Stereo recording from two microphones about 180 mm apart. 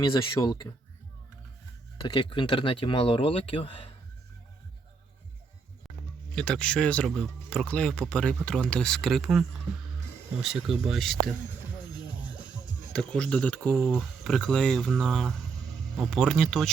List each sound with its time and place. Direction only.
0.0 s speech: 20° left (ahead or behind)
2.0 s speech: 25° left (ahead or behind)
6.3 s speech: 5° left (ahead or behind)
10.8 s speech: centre (ahead or behind)
12.9 s speech: 5° left (ahead or behind)